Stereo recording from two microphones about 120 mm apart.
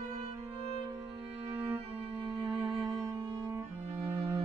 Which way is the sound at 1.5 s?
20° right (ahead or behind).